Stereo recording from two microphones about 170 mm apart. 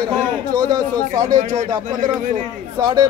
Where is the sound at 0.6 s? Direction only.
25° right (ahead or behind).